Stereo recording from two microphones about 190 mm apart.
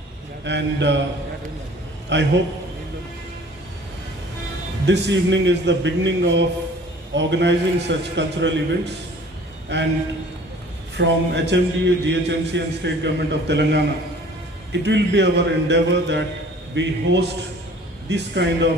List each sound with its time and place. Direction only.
0.4 s a man's voice: 70° right (ahead or behind)
2.0 s a man's voice: 65° right (ahead or behind)
4.8 s a man's voice: 65° right (ahead or behind)
9.7 s a man's voice: 65° right (ahead or behind)
11.0 s a man's voice: 65° right (ahead or behind)